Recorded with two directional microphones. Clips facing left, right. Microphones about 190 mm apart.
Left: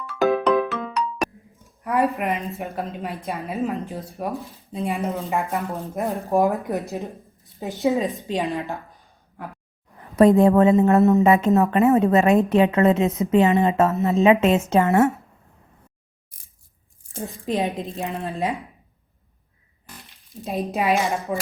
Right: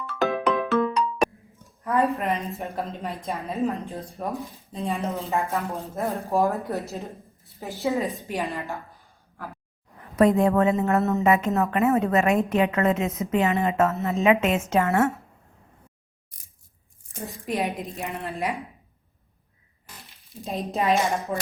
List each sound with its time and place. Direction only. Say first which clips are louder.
0.0 s ringtone: left 4 dB; centre (ahead or behind)
1.8 s a sound: left 1 dB; 15° left (ahead or behind)
2.1 s speech: left 1 dB; 15° left (ahead or behind)
2.5 s speech: left 2 dB; centre (ahead or behind)
3.9 s speech: left 2 dB; 10° left (ahead or behind)
10.2 s a woman's voice: left 5 dB; 30° left (ahead or behind)
17.4 s a woman's voice: left 3 dB; 20° left (ahead or behind)
20.5 s speech: left 2 dB; 15° left (ahead or behind)